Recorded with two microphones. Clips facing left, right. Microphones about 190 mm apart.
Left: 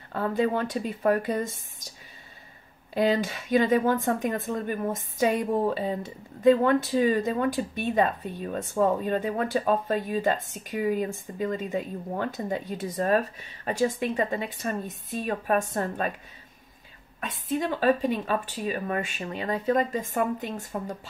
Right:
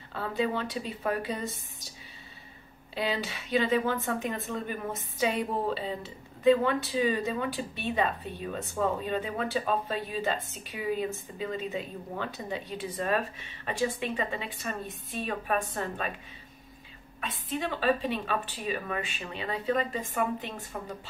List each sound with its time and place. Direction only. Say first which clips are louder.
0.1 s speech: left 5 dB; 50° left (ahead or behind)
2.9 s speech: left 7 dB; 45° left (ahead or behind)
17.2 s speech: left 5 dB; 45° left (ahead or behind)